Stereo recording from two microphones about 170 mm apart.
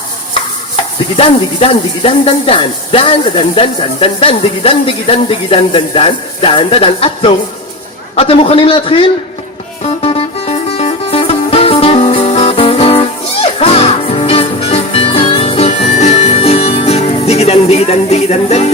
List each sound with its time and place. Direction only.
0.8 s stir: 35° left (ahead or behind)
1.1 s speech: 35° left (ahead or behind)
9.8 s music: 35° left (ahead or behind)